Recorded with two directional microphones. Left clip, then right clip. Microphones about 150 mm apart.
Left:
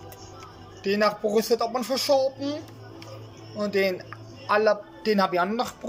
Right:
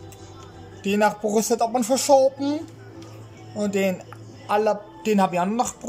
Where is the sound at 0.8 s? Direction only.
20° right (ahead or behind).